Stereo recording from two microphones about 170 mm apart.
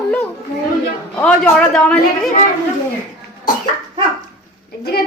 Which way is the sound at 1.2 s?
10° left (ahead or behind).